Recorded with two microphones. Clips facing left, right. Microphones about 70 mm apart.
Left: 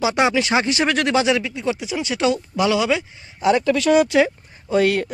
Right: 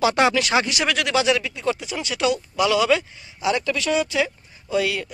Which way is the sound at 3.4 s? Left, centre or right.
Left.